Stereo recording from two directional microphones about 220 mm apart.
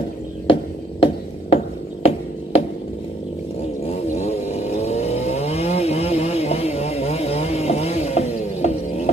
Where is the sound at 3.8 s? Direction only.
30° left (ahead or behind).